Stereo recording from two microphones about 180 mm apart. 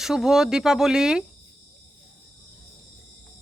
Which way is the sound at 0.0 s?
Centre (ahead or behind).